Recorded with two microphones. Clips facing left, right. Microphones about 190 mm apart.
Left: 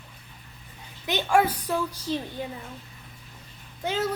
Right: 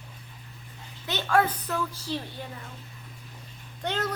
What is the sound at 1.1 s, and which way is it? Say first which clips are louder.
Speech: left 2 dB; 15° left (ahead or behind).